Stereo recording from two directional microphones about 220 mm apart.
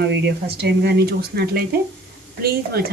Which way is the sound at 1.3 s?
45° right (ahead or behind).